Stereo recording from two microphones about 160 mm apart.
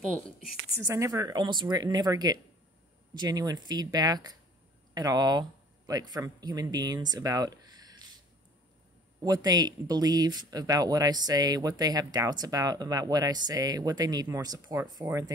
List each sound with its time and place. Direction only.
0.7 s speech: 20° right (ahead or behind)
9.2 s speech: 25° right (ahead or behind)